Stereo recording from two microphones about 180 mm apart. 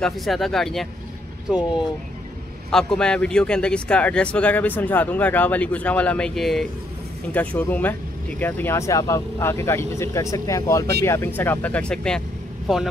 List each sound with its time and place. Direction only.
0.0 s speech: centre (ahead or behind)
2.7 s speech: 5° left (ahead or behind)